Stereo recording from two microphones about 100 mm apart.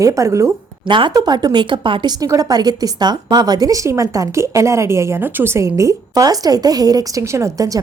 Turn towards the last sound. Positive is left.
turn(degrees=-35)  # may be behind; listen again after turning